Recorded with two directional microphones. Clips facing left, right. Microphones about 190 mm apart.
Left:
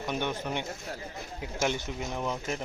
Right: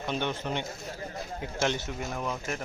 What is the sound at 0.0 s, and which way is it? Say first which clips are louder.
Speech: even; 15° left (ahead or behind).